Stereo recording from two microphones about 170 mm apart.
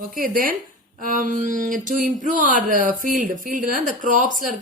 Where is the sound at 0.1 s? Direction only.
55° right (ahead or behind).